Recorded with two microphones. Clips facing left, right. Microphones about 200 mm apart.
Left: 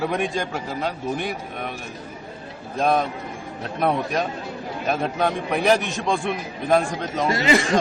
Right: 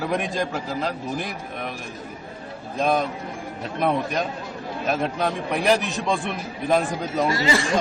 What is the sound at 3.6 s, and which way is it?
A man's voice, centre (ahead or behind).